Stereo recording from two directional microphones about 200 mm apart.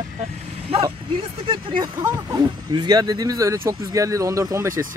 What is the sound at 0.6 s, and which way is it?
Speech, 30° right (ahead or behind).